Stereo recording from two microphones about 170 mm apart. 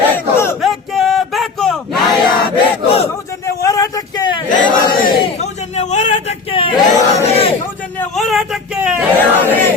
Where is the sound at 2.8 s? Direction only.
35° left (ahead or behind).